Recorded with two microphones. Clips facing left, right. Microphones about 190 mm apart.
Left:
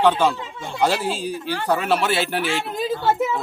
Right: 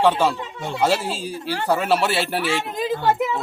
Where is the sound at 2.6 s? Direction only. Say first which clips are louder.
Even; 15° right (ahead or behind).